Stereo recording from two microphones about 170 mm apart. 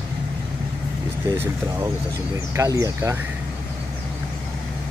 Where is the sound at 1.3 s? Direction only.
15° right (ahead or behind).